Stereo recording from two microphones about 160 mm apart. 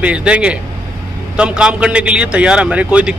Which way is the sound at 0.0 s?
5° right (ahead or behind).